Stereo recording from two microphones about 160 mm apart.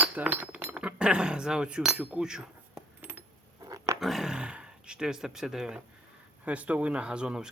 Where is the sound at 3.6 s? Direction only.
20° right (ahead or behind).